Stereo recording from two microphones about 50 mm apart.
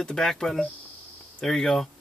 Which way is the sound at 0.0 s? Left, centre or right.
Centre.